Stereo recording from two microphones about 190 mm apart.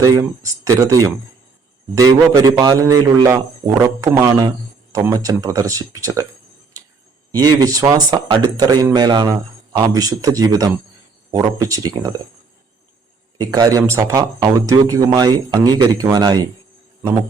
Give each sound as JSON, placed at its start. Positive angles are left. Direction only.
{"t": 0.0, "sound": "speech", "side_deg": -15}
{"t": 2.3, "sound": "speech", "side_deg": -20}
{"t": 7.3, "sound": "speech", "side_deg": -20}
{"t": 13.4, "sound": "speech", "side_deg": -15}